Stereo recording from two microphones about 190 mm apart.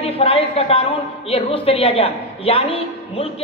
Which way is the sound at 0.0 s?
30° left (ahead or behind).